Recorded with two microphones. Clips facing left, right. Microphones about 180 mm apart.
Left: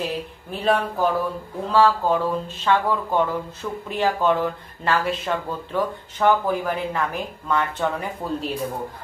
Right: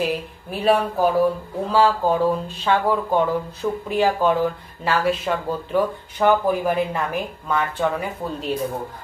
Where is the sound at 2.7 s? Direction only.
15° right (ahead or behind).